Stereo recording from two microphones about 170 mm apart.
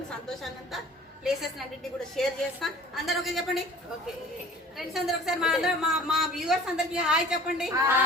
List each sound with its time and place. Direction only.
0.3 s speech: centre (ahead or behind)
4.8 s speech: centre (ahead or behind)